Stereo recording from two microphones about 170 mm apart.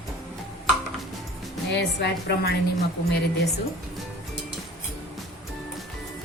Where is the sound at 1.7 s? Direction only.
80° left.